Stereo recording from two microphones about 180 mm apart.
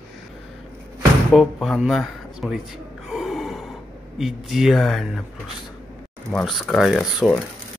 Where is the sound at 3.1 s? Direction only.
Centre (ahead or behind).